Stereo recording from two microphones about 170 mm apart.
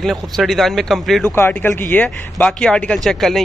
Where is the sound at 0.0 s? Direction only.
Centre (ahead or behind).